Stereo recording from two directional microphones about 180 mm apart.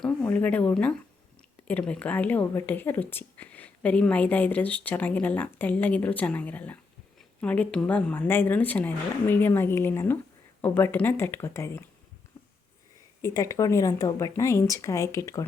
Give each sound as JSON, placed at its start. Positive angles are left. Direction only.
{"t": 0.0, "sound": "speech", "side_deg": 5}
{"t": 13.2, "sound": "speech", "side_deg": 15}